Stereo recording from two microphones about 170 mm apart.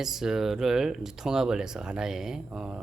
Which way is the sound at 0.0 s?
Centre (ahead or behind).